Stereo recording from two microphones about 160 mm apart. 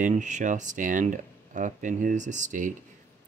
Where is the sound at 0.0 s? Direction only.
50° right (ahead or behind).